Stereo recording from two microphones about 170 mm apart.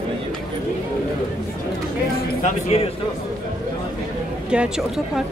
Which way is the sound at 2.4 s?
35° left (ahead or behind).